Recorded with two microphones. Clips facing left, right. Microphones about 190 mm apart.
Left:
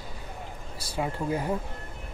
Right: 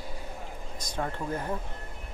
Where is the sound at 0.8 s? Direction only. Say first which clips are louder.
Left 3 dB; 10° left (ahead or behind).